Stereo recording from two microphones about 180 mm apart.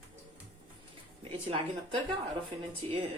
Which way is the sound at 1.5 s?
30° right (ahead or behind).